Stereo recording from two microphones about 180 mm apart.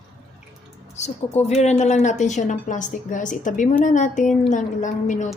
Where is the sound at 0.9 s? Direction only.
40° left (ahead or behind).